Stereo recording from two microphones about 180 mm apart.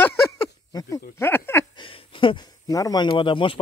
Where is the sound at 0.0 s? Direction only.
10° left (ahead or behind).